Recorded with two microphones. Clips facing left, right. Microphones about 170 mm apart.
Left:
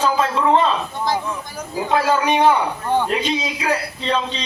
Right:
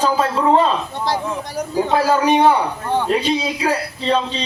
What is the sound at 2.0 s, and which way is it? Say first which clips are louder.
Speech: right 3 dB; 35° right (ahead or behind).